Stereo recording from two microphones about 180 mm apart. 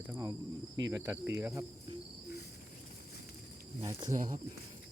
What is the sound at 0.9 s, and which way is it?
Speech, 10° right (ahead or behind).